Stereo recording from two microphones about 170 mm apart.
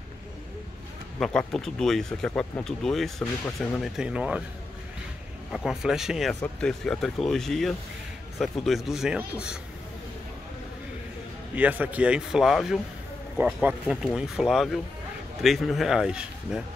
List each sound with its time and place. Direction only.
1.2 s speech: centre (ahead or behind)
5.5 s speech: centre (ahead or behind)
11.5 s a man's voice: 10° right (ahead or behind)